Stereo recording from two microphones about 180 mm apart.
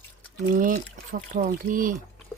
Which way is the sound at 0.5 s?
50° right (ahead or behind).